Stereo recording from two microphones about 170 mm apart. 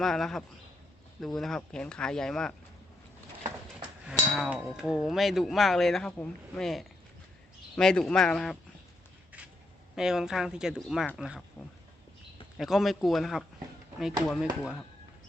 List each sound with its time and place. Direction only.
0.0 s speech: centre (ahead or behind)
3.8 s speech: 5° right (ahead or behind)
9.9 s speech: 5° right (ahead or behind)
12.5 s speech: centre (ahead or behind)